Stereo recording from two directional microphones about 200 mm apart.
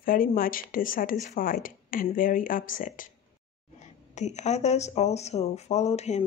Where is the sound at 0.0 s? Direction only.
45° left (ahead or behind).